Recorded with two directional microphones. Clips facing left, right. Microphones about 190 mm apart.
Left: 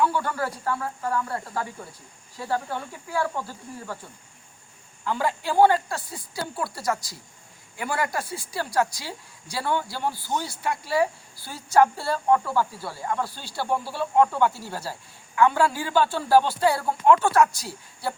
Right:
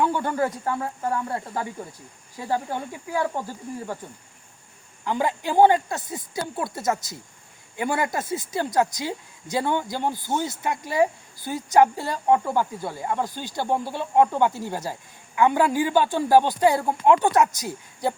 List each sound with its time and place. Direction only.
0.0 s a woman's voice: 20° right (ahead or behind)
5.0 s a woman's voice: 20° right (ahead or behind)